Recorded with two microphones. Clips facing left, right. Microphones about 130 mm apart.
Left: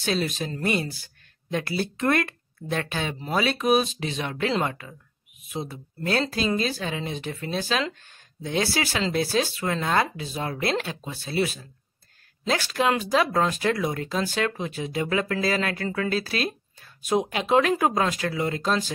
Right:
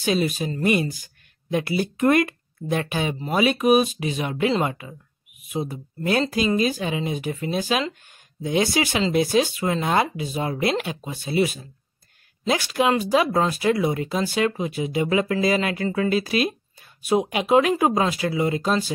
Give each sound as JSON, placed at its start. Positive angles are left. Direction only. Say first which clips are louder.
{"t": 0.0, "sound": "speech", "louder": "right 4 dB", "side_deg": -10}
{"t": 8.0, "sound": "a sound", "louder": "right 5 dB", "side_deg": -15}
{"t": 8.7, "sound": "speech", "louder": "right 4 dB", "side_deg": -15}